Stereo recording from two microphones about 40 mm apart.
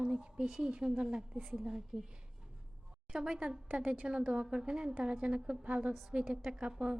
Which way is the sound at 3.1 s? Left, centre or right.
Centre.